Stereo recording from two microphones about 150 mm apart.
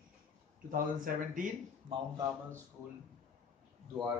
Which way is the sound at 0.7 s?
60° right (ahead or behind).